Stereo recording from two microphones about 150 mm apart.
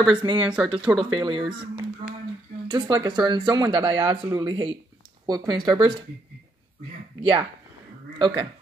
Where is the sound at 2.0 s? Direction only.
45° right (ahead or behind).